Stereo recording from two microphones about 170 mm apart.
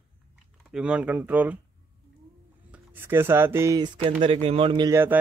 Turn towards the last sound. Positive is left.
turn(degrees=-20)  # may be behind; listen again after turning